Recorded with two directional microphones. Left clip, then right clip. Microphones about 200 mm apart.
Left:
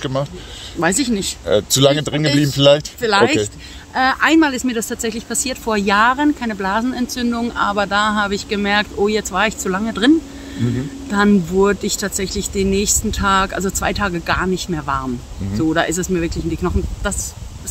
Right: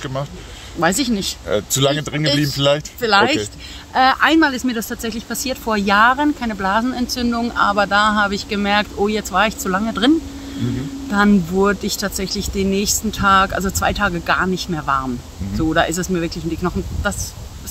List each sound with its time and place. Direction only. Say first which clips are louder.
0.0 s speech: left 4 dB; 40° left (ahead or behind)
0.7 s speech: even; 10° right (ahead or behind)
1.5 s speech: left 4 dB; 40° left (ahead or behind)
3.0 s speech: even; 10° right (ahead or behind)